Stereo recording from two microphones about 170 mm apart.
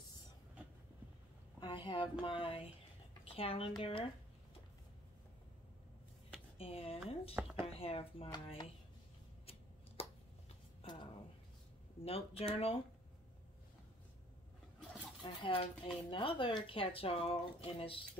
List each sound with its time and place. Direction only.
1.9 s speech: 30° left (ahead or behind)
6.6 s speech: 35° left (ahead or behind)
7.3 s speech: 10° right (ahead or behind)
7.6 s speech: 35° left (ahead or behind)
10.8 s a sound: 35° left (ahead or behind)
12.0 s speech: 35° left (ahead or behind)
15.2 s speech: 30° left (ahead or behind)